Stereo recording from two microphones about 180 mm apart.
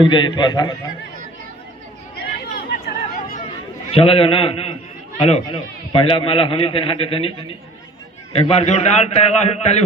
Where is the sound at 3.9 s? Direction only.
30° left (ahead or behind).